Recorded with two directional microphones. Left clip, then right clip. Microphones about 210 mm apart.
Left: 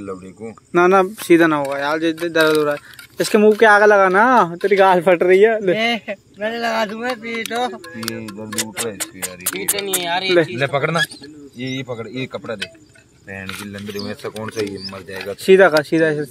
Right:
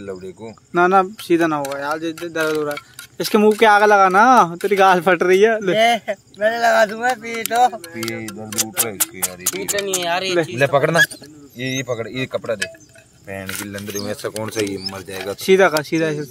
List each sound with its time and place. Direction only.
0.7 s speech: 5° left (ahead or behind)
3.2 s speech: 5° right (ahead or behind)
5.8 s speech: 60° right (ahead or behind)
8.5 s speech: 20° right (ahead or behind)
10.0 s speech: 55° right (ahead or behind); by 13.8 s 40° right (ahead or behind)
13.9 s speech: 55° right (ahead or behind)
14.4 s speech: 30° right (ahead or behind)
15.4 s speech: centre (ahead or behind)